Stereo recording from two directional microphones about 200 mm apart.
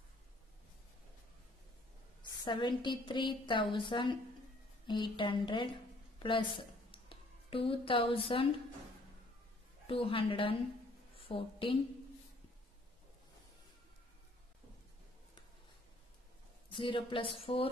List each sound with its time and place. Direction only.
2.4 s a woman's voice: 25° left (ahead or behind)
9.8 s a woman's voice: 25° left (ahead or behind)
16.7 s a woman's voice: 25° left (ahead or behind)